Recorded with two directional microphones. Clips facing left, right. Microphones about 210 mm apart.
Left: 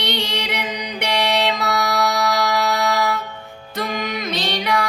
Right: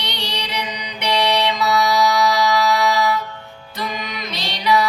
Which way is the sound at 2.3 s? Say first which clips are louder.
Right 2 dB; 50° left (ahead or behind).